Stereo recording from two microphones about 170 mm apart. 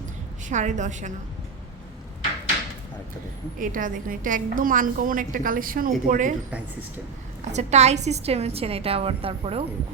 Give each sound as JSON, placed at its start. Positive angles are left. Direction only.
{"t": 0.4, "sound": "a woman's voice", "side_deg": -45}
{"t": 3.6, "sound": "a woman's voice", "side_deg": -50}
{"t": 7.4, "sound": "a woman's voice", "side_deg": -40}